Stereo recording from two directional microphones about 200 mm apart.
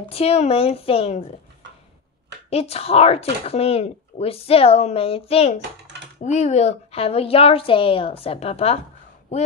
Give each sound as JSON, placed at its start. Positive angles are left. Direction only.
{"t": 0.1, "sound": "speech", "side_deg": 30}
{"t": 2.5, "sound": "a woman's voice", "side_deg": 30}